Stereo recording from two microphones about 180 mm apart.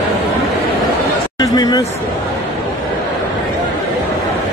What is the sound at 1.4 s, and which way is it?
Speech, 20° left (ahead or behind).